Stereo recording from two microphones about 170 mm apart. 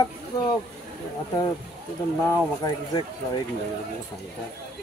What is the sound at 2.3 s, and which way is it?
Speech, 20° left (ahead or behind).